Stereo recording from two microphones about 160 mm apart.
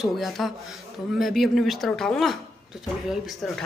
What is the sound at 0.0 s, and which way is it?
A woman's voice, centre (ahead or behind).